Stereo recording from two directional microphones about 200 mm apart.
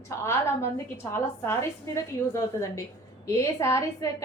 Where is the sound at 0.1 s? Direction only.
15° left (ahead or behind).